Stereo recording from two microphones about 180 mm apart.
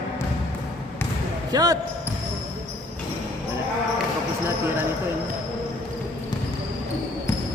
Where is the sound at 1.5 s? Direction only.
20° right (ahead or behind).